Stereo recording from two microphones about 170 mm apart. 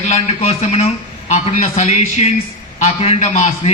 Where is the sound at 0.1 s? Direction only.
40° left (ahead or behind).